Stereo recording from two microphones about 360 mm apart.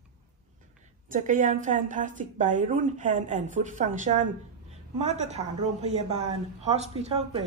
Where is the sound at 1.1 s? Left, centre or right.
Right.